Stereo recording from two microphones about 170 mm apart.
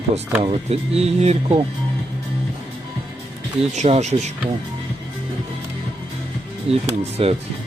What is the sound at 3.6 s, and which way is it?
Speech, 40° right (ahead or behind).